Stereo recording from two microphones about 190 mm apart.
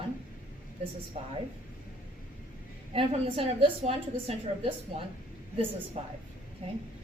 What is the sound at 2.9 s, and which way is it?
A woman's voice, 30° right (ahead or behind).